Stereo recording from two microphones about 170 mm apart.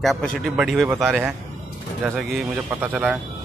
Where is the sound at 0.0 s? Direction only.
Centre (ahead or behind).